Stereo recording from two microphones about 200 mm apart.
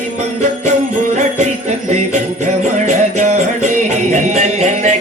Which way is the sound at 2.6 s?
35° right (ahead or behind).